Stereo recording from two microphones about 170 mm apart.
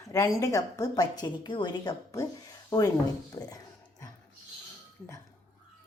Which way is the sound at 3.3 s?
20° left (ahead or behind).